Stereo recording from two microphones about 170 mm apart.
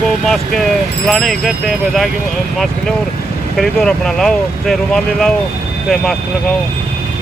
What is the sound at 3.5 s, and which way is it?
Speech, centre (ahead or behind).